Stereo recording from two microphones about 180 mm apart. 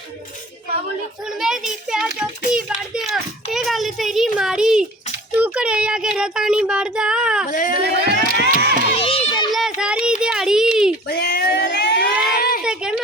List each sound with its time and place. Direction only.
1.4 s child singing: centre (ahead or behind)
2.6 s a child's voice: centre (ahead or behind)
5.4 s child singing: 5° right (ahead or behind)
7.4 s speech: 50° left (ahead or behind)
7.8 s crowd: 65° right (ahead or behind)
9.0 s children playing: 35° left (ahead or behind)
9.5 s a sound: centre (ahead or behind)
11.1 s a sound: 65° left (ahead or behind)
12.4 s a sound: 55° left (ahead or behind)